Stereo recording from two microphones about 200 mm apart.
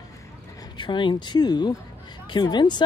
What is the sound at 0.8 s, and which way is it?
Speech, 25° left (ahead or behind).